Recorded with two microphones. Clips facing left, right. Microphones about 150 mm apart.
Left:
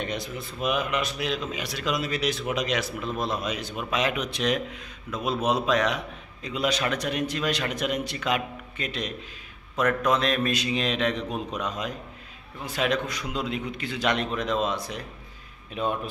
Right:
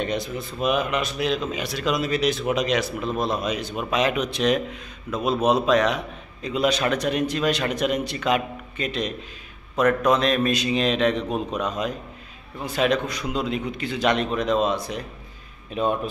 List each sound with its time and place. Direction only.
0.0 s a man's voice: 30° right (ahead or behind)
12.7 s a man's voice: 25° right (ahead or behind)